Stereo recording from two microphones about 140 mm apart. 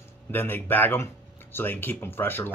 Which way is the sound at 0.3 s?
15° left (ahead or behind).